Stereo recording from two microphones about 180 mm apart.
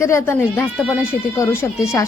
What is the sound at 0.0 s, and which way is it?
A woman's voice, 15° left (ahead or behind).